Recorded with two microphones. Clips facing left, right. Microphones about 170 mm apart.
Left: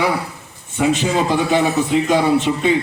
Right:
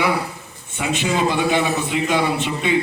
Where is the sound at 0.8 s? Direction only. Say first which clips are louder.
Left 4 dB; 40° left (ahead or behind).